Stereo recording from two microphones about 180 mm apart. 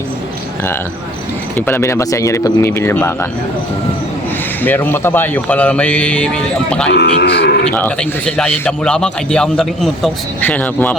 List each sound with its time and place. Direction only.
1.5 s a man's voice: 10° left (ahead or behind)
4.6 s a man's voice: 10° left (ahead or behind)
6.9 s speech: 70° left (ahead or behind)
7.7 s speech: 10° left (ahead or behind)